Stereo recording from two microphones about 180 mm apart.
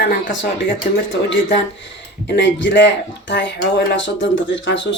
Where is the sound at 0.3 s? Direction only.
90° left.